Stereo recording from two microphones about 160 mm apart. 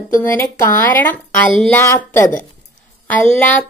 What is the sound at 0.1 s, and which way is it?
Speech, 15° left (ahead or behind).